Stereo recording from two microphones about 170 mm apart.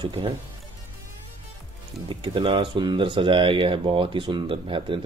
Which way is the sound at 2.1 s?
30° right (ahead or behind).